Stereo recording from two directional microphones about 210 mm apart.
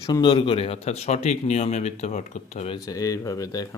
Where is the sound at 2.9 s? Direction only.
15° left (ahead or behind).